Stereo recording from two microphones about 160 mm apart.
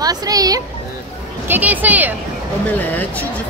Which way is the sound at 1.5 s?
10° right (ahead or behind).